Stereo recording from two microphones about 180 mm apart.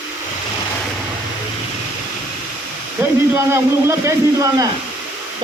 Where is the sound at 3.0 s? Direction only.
15° right (ahead or behind).